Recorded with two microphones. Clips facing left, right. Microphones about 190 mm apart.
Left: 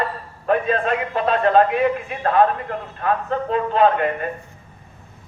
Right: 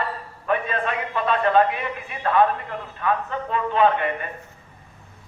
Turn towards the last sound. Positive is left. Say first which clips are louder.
# left 3 dB
turn(degrees=40)  # may be behind; listen again after turning